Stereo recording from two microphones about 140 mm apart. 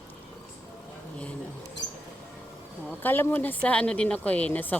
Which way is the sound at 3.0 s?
15° left (ahead or behind).